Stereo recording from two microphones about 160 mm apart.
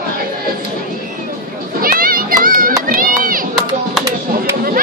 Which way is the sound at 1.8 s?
65° right (ahead or behind).